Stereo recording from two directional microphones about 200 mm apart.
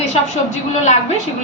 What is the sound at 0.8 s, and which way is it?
Speech, 35° left (ahead or behind).